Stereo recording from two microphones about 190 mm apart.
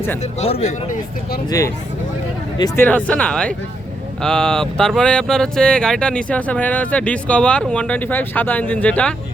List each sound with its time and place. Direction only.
0.2 s speech: 35° left (ahead or behind)
1.5 s speech: 15° left (ahead or behind)